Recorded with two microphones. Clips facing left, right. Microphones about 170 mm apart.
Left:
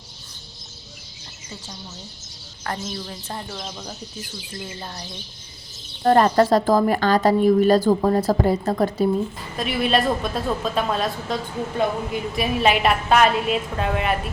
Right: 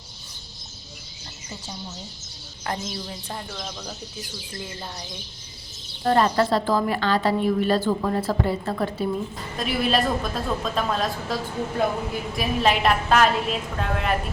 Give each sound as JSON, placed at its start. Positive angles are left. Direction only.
{"t": 2.6, "sound": "speech", "side_deg": -15}
{"t": 6.0, "sound": "a woman's voice", "side_deg": 45}
{"t": 9.6, "sound": "a woman's voice", "side_deg": 0}